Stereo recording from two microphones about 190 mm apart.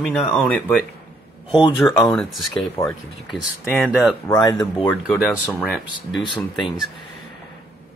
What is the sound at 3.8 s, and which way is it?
Speech, centre (ahead or behind).